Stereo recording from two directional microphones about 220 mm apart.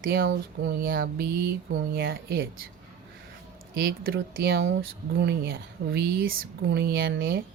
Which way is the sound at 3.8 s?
40° right (ahead or behind).